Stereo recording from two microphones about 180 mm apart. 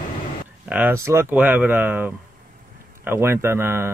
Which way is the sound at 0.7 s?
10° right (ahead or behind).